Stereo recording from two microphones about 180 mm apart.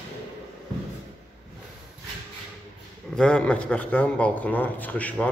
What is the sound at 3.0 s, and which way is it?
Speech, 5° left (ahead or behind).